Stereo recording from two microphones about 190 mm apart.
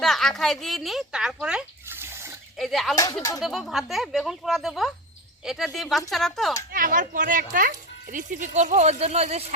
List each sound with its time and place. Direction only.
0.0 s speech: centre (ahead or behind)
2.6 s speech: centre (ahead or behind)
2.9 s speech: 20° left (ahead or behind)
3.4 s speech: centre (ahead or behind)
6.7 s speech: 45° right (ahead or behind)